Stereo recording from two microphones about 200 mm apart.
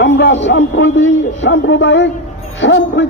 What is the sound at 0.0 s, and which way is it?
A man's voice, 60° left (ahead or behind).